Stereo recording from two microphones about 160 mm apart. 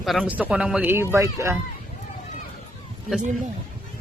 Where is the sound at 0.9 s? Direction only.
15° right (ahead or behind).